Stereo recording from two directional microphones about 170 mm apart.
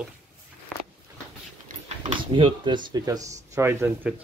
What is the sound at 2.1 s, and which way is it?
Speech, 30° right (ahead or behind).